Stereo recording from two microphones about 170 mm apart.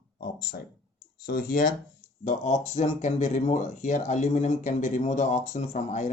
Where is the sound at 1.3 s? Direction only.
60° left (ahead or behind).